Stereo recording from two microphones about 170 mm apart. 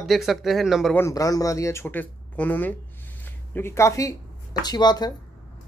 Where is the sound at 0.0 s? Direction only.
Centre (ahead or behind).